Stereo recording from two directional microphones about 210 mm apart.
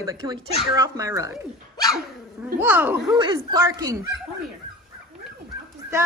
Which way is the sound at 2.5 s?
10° right (ahead or behind).